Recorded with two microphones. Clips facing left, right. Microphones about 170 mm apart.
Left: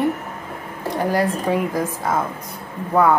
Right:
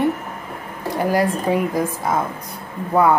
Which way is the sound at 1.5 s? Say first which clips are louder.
Right 1 dB; 15° right (ahead or behind).